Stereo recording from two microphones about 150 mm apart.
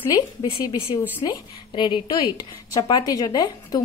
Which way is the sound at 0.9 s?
20° left (ahead or behind).